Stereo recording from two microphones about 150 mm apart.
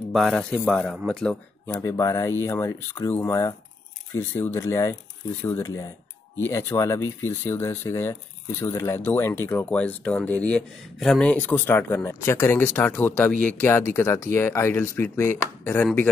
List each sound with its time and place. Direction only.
0.1 s speech: centre (ahead or behind)
1.7 s speech: 20° left (ahead or behind)